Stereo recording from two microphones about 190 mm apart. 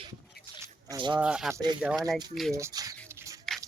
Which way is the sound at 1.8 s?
5° right (ahead or behind).